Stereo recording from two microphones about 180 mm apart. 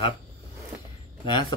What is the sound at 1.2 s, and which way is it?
Speech, 25° left (ahead or behind).